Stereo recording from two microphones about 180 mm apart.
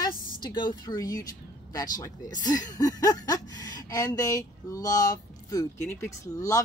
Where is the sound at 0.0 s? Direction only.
25° left (ahead or behind).